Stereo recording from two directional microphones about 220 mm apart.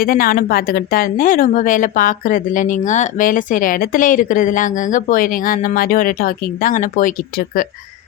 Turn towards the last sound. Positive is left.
turn(degrees=40)  # may be behind; listen again after turning